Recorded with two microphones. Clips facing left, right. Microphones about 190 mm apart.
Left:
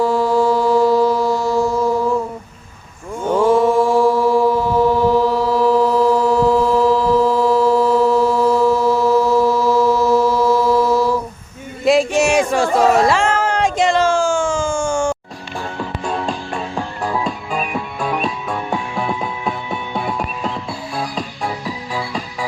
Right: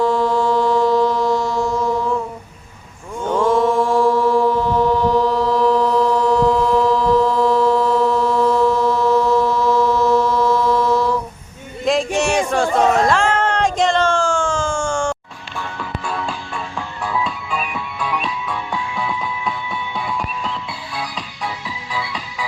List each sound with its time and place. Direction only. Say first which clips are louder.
0.0 s music: left 2 dB; 5° left (ahead or behind)
3.2 s mantra: left 2 dB; 5° left (ahead or behind)
11.9 s a sound: left 4 dB; 5° left (ahead or behind)
15.5 s music: left 2 dB; 40° left (ahead or behind)